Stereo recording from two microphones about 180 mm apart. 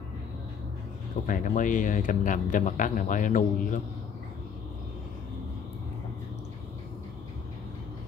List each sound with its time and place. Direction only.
1.2 s speech: 45° left (ahead or behind)